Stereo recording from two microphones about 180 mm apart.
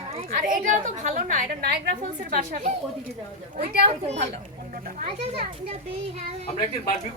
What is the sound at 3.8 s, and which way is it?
Speech, 35° right (ahead or behind).